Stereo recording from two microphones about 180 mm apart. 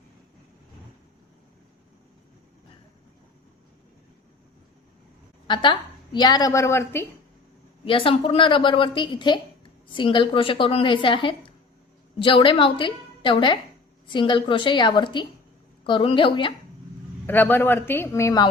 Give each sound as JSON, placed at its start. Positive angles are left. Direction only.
{"t": 6.1, "sound": "speech", "side_deg": 25}
{"t": 7.9, "sound": "a woman's voice", "side_deg": 30}
{"t": 17.2, "sound": "speech", "side_deg": 10}